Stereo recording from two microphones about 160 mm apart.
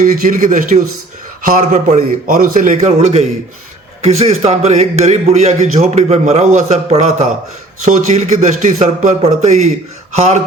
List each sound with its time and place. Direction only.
0.0 s a man's voice: 55° right (ahead or behind)
4.0 s a man's voice: 40° right (ahead or behind)